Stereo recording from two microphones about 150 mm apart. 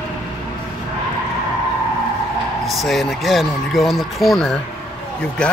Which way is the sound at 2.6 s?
Centre (ahead or behind).